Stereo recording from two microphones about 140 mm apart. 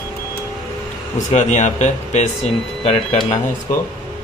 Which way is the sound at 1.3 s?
60° left (ahead or behind).